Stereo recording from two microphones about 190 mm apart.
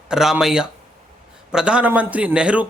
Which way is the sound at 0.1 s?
5° right (ahead or behind).